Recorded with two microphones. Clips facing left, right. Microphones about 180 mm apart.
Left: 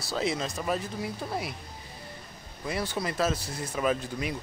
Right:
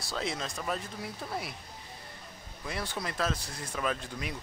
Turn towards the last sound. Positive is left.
turn(degrees=5)  # may be behind; listen again after turning